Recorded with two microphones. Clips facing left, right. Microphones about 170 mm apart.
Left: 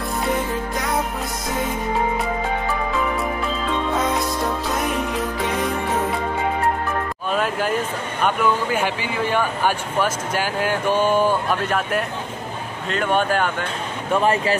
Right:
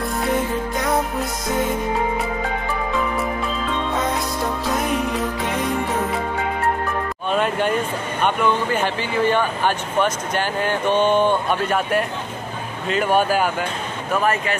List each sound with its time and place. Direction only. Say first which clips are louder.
4.7 s music: right 1 dB; centre (ahead or behind)
7.2 s music: right 3 dB; centre (ahead or behind)
8.2 s speech: even; 5° left (ahead or behind)
14.1 s speech: left 2 dB; 30° left (ahead or behind)